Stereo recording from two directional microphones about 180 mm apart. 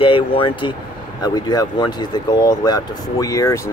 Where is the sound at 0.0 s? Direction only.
30° left (ahead or behind).